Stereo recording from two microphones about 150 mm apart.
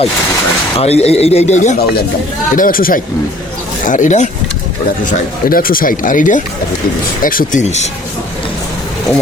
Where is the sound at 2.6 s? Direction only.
70° left (ahead or behind).